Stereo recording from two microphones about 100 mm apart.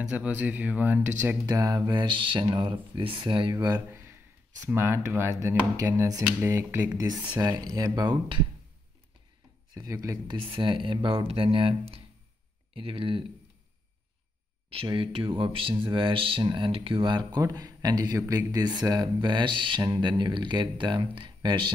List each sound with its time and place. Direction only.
0.0 s speech: 15° right (ahead or behind)
1.4 s speech: 40° right (ahead or behind)
3.5 s speech: 40° right (ahead or behind)
3.8 s speech: 25° right (ahead or behind)
7.0 s speech: 40° right (ahead or behind)
9.8 s speech: 30° right (ahead or behind)
10.2 s speech: 60° right (ahead or behind)
14.7 s speech: 60° right (ahead or behind)